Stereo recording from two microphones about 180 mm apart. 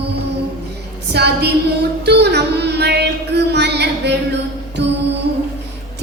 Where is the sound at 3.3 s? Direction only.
70° right (ahead or behind).